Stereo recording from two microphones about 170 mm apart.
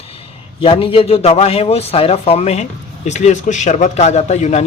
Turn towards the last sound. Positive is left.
turn(degrees=40)  # may be behind; listen again after turning